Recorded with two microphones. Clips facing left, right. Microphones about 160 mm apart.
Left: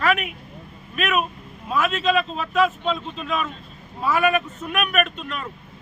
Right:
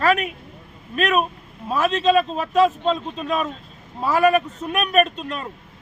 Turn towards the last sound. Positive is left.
turn(degrees=-35)  # may be behind; listen again after turning